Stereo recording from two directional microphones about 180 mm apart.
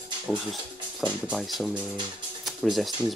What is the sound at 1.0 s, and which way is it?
Speech, centre (ahead or behind).